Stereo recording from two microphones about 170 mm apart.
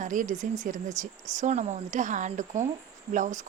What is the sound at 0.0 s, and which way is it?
Speech, 50° right (ahead or behind).